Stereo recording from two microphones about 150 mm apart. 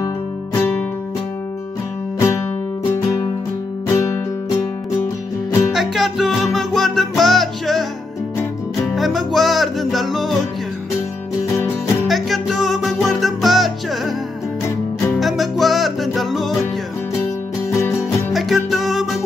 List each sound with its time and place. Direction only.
0.6 s music: 10° left (ahead or behind)
2.1 s music: 20° left (ahead or behind)
3.9 s music: 15° left (ahead or behind)
5.7 s music: centre (ahead or behind)
8.9 s music: centre (ahead or behind)
12.1 s music: centre (ahead or behind)
15.1 s music: centre (ahead or behind)
17.6 s music: 20° left (ahead or behind)
18.3 s music: centre (ahead or behind)